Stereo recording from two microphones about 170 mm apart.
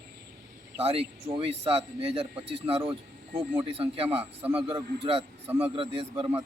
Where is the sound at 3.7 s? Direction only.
35° right (ahead or behind).